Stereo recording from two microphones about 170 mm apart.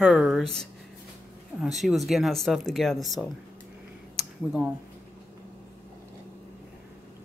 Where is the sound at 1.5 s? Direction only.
Centre (ahead or behind).